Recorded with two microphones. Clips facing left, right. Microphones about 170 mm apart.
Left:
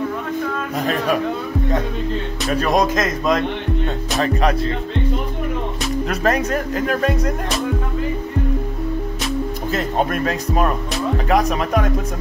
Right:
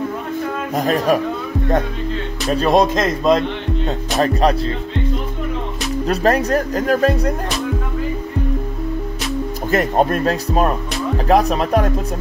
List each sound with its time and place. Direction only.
0.7 s speech: 40° right (ahead or behind)
2.5 s speech: 30° right (ahead or behind)
6.0 s speech: 35° right (ahead or behind)
9.9 s speech: 35° right (ahead or behind)